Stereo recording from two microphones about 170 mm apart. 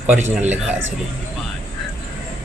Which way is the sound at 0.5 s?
10° right (ahead or behind).